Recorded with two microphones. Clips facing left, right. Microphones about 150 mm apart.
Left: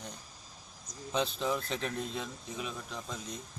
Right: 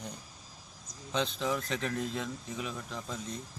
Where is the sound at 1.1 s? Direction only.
5° left (ahead or behind).